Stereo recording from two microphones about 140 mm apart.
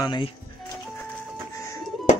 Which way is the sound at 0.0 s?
35° left (ahead or behind).